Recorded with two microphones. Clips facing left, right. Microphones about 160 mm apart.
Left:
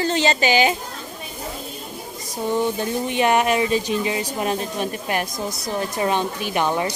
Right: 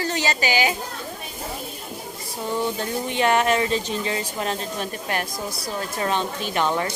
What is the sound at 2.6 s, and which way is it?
Speech, 15° left (ahead or behind).